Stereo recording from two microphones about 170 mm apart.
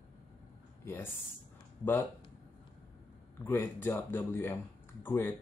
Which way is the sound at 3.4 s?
15° left (ahead or behind).